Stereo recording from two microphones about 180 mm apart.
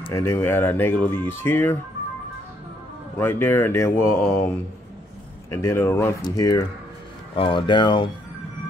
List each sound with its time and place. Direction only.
0.1 s speech: 15° left (ahead or behind)
3.2 s speech: 10° left (ahead or behind)
5.5 s speech: 15° left (ahead or behind)